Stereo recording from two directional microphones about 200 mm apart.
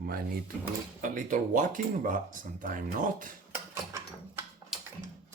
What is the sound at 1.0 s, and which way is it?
Speech, 40° right (ahead or behind).